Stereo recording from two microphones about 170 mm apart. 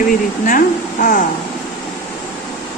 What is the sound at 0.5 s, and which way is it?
Speech, 55° left (ahead or behind).